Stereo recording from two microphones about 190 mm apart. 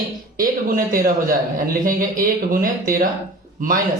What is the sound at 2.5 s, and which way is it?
Speech, 50° right (ahead or behind).